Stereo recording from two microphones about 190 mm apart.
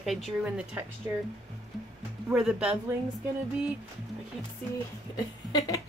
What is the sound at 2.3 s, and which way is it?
Speech, 5° right (ahead or behind).